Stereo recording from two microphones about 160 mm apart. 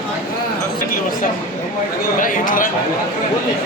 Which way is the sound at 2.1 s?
55° left (ahead or behind).